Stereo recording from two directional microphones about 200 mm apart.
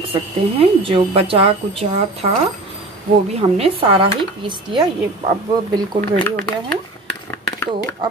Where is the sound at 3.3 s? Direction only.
30° right (ahead or behind).